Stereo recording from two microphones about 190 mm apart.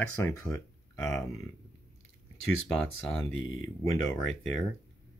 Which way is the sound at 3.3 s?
90° left.